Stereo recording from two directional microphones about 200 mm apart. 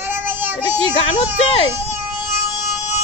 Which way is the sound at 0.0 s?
10° right (ahead or behind).